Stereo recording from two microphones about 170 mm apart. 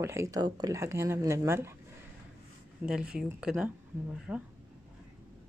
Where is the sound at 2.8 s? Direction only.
5° right (ahead or behind).